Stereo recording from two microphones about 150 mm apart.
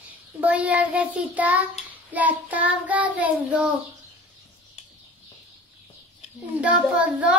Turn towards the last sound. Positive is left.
turn(degrees=-10)  # may be behind; listen again after turning